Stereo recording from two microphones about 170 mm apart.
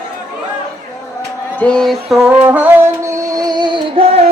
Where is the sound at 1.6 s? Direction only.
5° left (ahead or behind).